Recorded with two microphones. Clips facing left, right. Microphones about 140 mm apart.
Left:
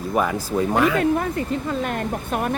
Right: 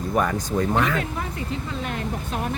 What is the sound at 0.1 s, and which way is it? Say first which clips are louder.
Speech: left 2 dB; 5° left (ahead or behind).